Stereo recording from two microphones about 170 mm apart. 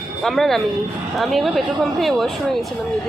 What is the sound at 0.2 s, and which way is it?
Speech, centre (ahead or behind).